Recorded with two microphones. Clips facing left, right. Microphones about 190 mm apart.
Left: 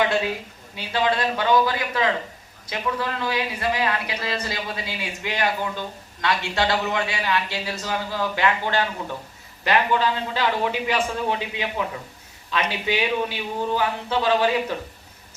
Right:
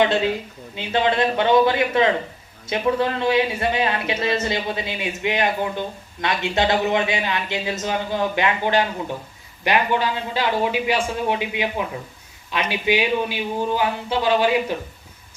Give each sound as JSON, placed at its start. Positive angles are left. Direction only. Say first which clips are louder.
{"t": 0.0, "sound": "a man's voice", "louder": "right 3 dB", "side_deg": -25}